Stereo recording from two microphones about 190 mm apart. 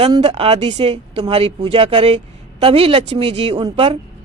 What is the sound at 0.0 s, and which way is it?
Speech, 30° right (ahead or behind).